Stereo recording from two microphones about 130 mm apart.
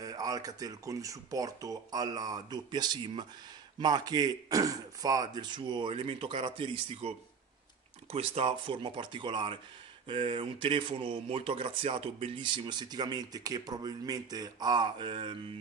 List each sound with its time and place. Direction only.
0.0 s speech: 30° right (ahead or behind)